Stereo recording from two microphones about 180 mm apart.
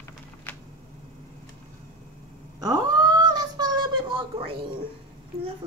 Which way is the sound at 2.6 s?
25° right (ahead or behind).